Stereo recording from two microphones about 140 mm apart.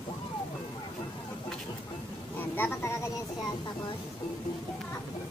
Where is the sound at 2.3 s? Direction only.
15° left (ahead or behind).